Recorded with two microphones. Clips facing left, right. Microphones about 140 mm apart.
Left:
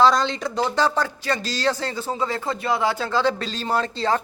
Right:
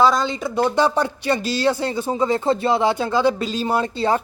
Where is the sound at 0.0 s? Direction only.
5° right (ahead or behind).